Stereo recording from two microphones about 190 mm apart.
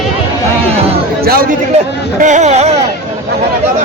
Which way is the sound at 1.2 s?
50° right (ahead or behind).